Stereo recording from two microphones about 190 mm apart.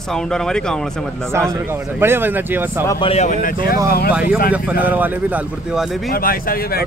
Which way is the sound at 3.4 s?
50° left (ahead or behind).